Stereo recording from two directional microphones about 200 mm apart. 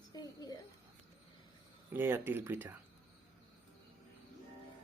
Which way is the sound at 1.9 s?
10° right (ahead or behind).